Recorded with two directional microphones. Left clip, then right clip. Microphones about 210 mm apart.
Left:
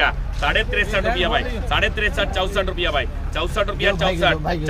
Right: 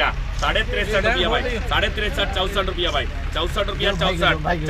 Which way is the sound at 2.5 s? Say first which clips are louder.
Left 1 dB; 25° left (ahead or behind).